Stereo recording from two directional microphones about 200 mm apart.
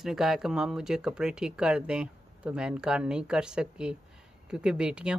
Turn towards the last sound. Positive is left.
turn(degrees=-5)  # may be behind; listen again after turning